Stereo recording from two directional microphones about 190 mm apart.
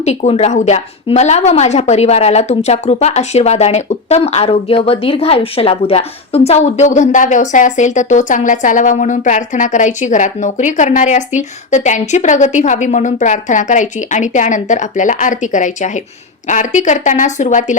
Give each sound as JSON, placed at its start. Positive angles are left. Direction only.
{"t": 0.0, "sound": "a woman's voice", "side_deg": 35}